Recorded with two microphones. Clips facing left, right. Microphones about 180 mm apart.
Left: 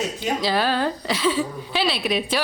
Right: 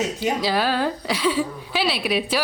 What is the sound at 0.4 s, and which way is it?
Speech, 10° right (ahead or behind).